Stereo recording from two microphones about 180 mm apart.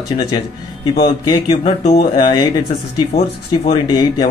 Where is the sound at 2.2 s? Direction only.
25° left (ahead or behind).